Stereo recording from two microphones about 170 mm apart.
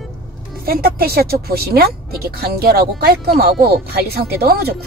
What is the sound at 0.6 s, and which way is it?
Speech, 60° right (ahead or behind).